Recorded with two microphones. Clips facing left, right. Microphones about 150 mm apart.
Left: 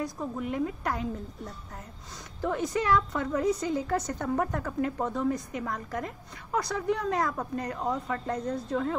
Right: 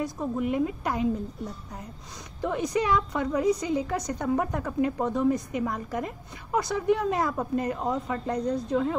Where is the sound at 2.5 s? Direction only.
15° right (ahead or behind).